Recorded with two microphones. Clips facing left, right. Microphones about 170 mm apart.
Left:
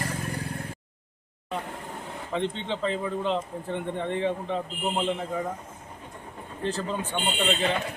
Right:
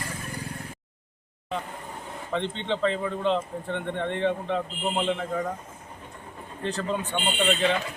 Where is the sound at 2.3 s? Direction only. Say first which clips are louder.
Right 1 dB; 5° left (ahead or behind).